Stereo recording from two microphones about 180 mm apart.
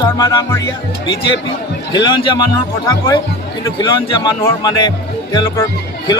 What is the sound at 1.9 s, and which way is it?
Speech, 25° left (ahead or behind).